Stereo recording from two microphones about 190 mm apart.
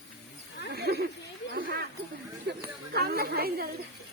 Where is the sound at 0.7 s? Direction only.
55° right (ahead or behind).